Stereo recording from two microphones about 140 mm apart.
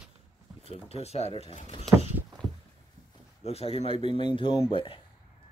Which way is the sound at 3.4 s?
45° left (ahead or behind).